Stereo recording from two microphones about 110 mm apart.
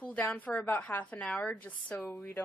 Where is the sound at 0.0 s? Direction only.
10° left (ahead or behind).